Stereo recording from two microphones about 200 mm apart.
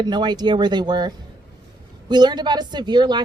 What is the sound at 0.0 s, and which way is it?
Speech, 20° right (ahead or behind).